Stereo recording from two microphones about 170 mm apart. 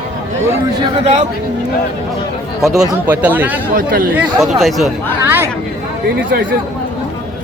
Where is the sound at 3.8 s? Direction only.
55° right (ahead or behind).